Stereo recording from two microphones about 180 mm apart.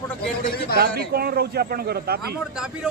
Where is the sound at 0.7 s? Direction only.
60° right (ahead or behind).